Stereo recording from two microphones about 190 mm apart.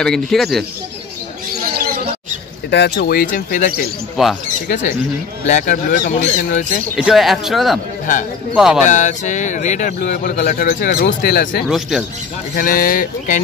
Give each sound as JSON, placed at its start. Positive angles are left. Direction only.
{"t": 0.0, "sound": "speech", "side_deg": 0}
{"t": 2.7, "sound": "speech", "side_deg": 60}
{"t": 4.2, "sound": "speech", "side_deg": 0}
{"t": 5.5, "sound": "speech", "side_deg": 40}
{"t": 7.0, "sound": "speech", "side_deg": 0}
{"t": 8.1, "sound": "speech", "side_deg": 40}
{"t": 8.5, "sound": "speech", "side_deg": 0}
{"t": 8.8, "sound": "speech", "side_deg": 40}
{"t": 9.9, "sound": "a man's voice", "side_deg": 55}